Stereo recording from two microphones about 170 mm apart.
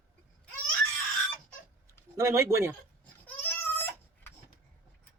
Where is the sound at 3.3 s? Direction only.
10° left (ahead or behind).